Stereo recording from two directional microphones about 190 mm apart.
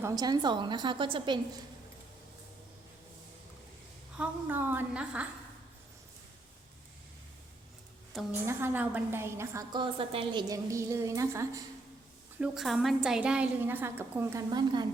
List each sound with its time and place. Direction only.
0.0 s a woman's voice: 20° right (ahead or behind)
4.2 s a woman's voice: 10° right (ahead or behind)
8.3 s a woman's voice: 10° right (ahead or behind); by 10.4 s 30° right (ahead or behind)
10.5 s a woman's voice: 15° right (ahead or behind)
12.4 s a woman's voice: centre (ahead or behind)
14.5 s a woman's voice: 20° right (ahead or behind)